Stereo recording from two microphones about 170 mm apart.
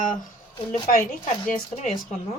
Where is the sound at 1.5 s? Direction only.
45° left (ahead or behind).